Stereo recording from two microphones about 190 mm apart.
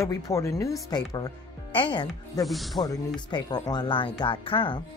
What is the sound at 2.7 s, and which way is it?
Speech, 20° left (ahead or behind).